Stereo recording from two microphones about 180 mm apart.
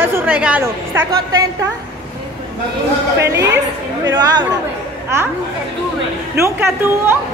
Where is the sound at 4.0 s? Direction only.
20° right (ahead or behind).